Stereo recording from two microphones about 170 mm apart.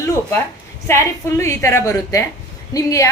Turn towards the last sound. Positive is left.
turn(degrees=20)  # may be behind; listen again after turning